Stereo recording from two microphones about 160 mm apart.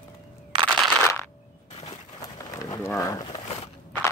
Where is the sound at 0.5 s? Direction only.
30° right (ahead or behind).